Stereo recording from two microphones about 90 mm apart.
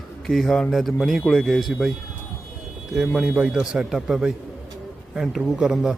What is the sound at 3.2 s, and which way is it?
A man's voice, 15° right (ahead or behind).